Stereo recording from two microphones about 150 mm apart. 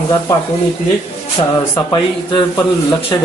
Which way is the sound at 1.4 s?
35° left (ahead or behind).